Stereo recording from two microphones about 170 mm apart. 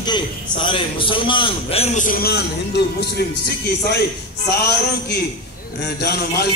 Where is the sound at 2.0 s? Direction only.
60° left (ahead or behind).